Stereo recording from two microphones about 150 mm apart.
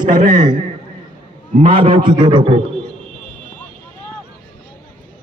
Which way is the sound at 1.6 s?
35° right (ahead or behind).